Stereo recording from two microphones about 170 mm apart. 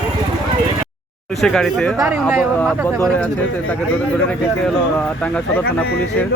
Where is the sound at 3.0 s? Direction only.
10° left (ahead or behind).